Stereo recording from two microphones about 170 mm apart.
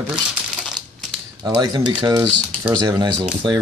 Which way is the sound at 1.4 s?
25° right (ahead or behind).